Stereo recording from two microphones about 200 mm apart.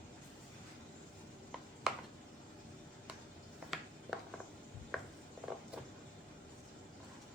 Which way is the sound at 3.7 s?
Centre (ahead or behind).